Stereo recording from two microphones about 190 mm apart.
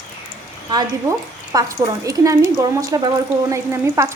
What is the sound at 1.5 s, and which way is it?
Speech, 20° right (ahead or behind).